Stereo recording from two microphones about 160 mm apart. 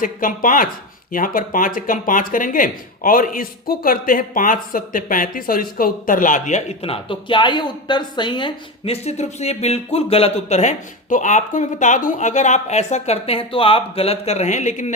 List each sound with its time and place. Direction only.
0.0 s speech: 55° left (ahead or behind)